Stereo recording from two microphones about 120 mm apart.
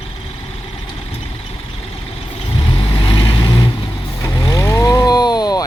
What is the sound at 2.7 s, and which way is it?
Vehicle, 40° left (ahead or behind).